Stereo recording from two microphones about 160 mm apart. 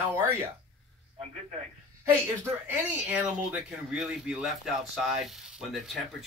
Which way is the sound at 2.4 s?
10° right (ahead or behind).